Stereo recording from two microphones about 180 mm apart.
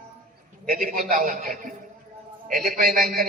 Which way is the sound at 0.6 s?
50° right (ahead or behind).